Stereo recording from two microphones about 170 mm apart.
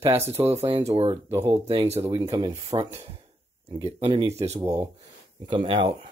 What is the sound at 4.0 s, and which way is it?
Speech, 30° right (ahead or behind).